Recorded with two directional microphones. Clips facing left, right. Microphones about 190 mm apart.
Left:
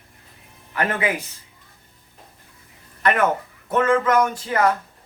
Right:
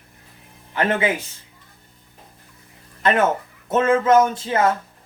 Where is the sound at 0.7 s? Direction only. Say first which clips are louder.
Right 3 dB; 25° right (ahead or behind).